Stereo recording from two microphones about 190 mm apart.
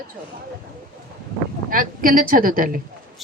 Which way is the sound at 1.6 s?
45° right (ahead or behind).